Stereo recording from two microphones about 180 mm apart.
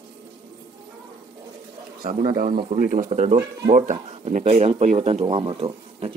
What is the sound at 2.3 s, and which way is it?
Speech, 50° right (ahead or behind).